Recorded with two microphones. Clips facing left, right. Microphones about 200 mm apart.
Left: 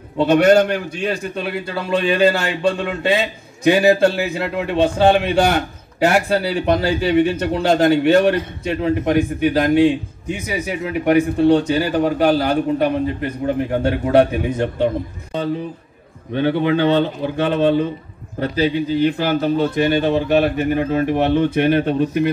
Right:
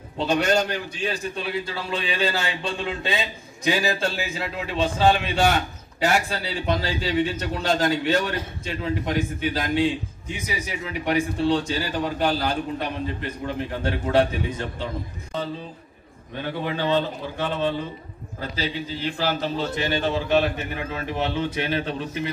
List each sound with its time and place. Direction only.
0.2 s a man's voice: 60° left (ahead or behind)
16.3 s speech: 70° left (ahead or behind)
18.6 s a man's voice: 55° left (ahead or behind)